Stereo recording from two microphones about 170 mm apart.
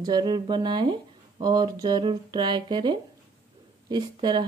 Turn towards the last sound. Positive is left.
turn(degrees=-25)  # may be behind; listen again after turning